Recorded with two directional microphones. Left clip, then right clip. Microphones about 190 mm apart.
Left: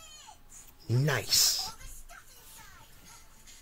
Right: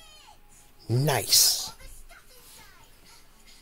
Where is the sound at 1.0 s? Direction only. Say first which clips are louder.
Right 5 dB; 20° right (ahead or behind).